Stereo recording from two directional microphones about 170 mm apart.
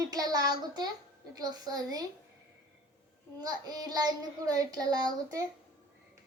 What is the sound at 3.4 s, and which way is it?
A child's voice, 25° right (ahead or behind).